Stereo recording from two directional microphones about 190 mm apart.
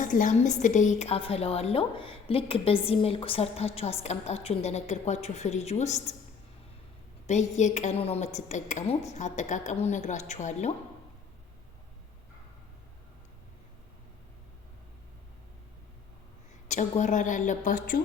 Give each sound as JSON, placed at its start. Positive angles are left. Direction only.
{"t": 0.0, "sound": "a woman's voice", "side_deg": 45}
{"t": 7.3, "sound": "a woman's voice", "side_deg": 35}
{"t": 17.0, "sound": "a woman's voice", "side_deg": 40}